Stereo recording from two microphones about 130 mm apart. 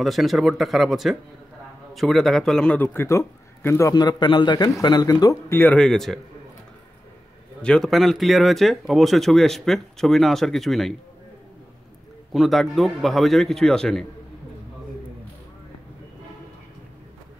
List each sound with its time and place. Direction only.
0.0 s a man's voice: centre (ahead or behind); by 3.9 s 20° left (ahead or behind)
3.9 s a man's voice: 30° left (ahead or behind)
5.5 s a man's voice: 15° left (ahead or behind)
5.8 s speech: 5° left (ahead or behind)
7.6 s speech: 5° left (ahead or behind)
12.3 s speech: centre (ahead or behind)